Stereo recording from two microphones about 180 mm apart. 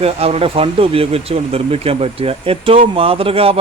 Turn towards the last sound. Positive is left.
turn(degrees=-30)  # may be behind; listen again after turning